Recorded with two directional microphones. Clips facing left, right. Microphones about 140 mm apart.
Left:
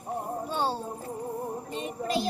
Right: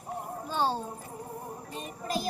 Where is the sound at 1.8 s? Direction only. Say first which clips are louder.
Left 6 dB; 70° left (ahead or behind).